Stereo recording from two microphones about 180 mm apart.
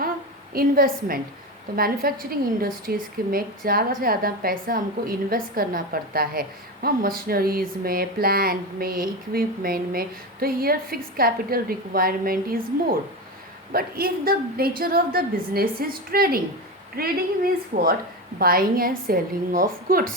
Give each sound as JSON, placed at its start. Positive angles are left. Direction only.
{"t": 0.5, "sound": "speech", "side_deg": -55}
{"t": 13.7, "sound": "a woman's voice", "side_deg": -55}